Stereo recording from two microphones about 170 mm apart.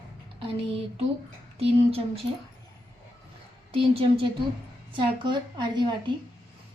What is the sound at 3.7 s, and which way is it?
A woman's voice, 35° right (ahead or behind).